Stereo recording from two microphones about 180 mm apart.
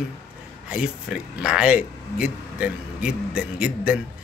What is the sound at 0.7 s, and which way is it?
A man's voice, 5° right (ahead or behind).